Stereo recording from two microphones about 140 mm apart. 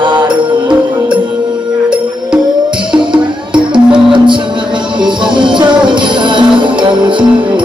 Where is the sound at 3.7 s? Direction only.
35° right (ahead or behind).